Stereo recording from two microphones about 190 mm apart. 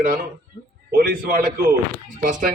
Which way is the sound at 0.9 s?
50° right (ahead or behind).